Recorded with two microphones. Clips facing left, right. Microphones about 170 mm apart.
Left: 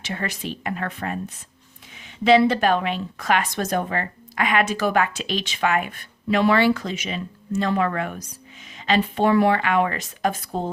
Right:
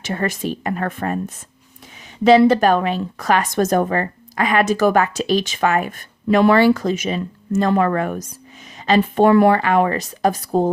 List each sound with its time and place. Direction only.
0.0 s a woman's voice: 45° right (ahead or behind)
2.2 s a woman's voice: 40° right (ahead or behind)